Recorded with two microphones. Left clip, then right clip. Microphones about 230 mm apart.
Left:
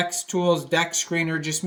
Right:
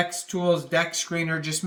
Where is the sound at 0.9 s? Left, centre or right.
Right.